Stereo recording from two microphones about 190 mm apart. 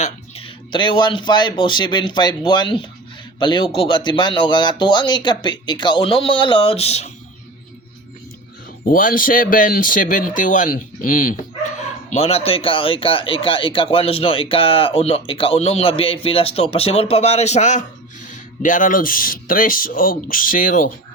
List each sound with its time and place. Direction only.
0.0 s speech: 30° left (ahead or behind)
8.8 s speech: 45° left (ahead or behind)
12.1 s speech: 30° left (ahead or behind)